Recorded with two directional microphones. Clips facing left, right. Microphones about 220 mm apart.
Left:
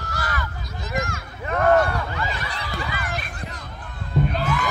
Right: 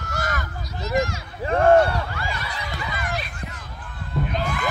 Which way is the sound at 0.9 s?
50° left (ahead or behind).